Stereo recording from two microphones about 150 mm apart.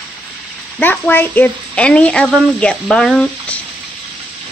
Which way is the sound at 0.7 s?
10° left (ahead or behind).